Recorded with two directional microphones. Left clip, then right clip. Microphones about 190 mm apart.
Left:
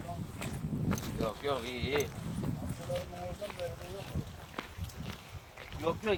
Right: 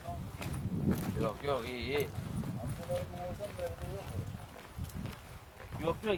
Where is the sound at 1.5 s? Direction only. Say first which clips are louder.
Right 1 dB; 35° right (ahead or behind).